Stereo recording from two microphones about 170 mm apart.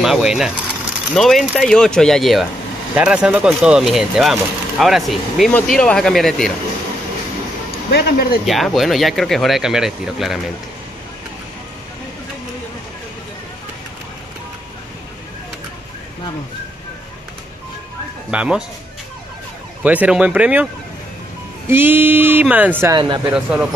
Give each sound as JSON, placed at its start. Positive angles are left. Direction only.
{"t": 0.0, "sound": "speech", "side_deg": 0}
{"t": 7.9, "sound": "speech", "side_deg": 60}
{"t": 8.5, "sound": "speech", "side_deg": 0}
{"t": 18.3, "sound": "speech", "side_deg": -5}
{"t": 19.8, "sound": "speech", "side_deg": -10}
{"t": 21.6, "sound": "speech", "side_deg": -10}
{"t": 22.8, "sound": "speech", "side_deg": -25}
{"t": 23.3, "sound": "speech", "side_deg": -5}